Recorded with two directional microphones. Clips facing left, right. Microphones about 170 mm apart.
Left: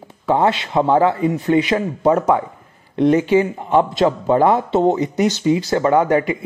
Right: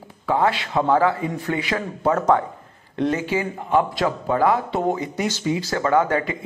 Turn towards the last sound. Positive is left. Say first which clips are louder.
# left 4 dB
turn(degrees=15)  # may be behind; listen again after turning